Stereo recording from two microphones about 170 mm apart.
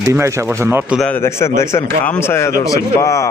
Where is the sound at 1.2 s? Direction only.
15° left (ahead or behind).